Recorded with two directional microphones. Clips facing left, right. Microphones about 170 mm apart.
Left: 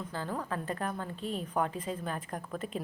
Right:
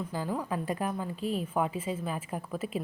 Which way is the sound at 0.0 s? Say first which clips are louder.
Right 3 dB; 10° right (ahead or behind).